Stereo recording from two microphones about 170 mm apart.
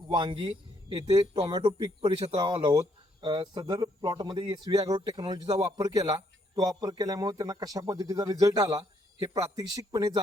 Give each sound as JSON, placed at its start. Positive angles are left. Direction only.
{"t": 0.1, "sound": "speech", "side_deg": -25}
{"t": 2.4, "sound": "speech", "side_deg": -25}